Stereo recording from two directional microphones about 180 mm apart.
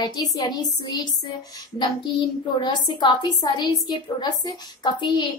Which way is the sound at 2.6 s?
25° left (ahead or behind).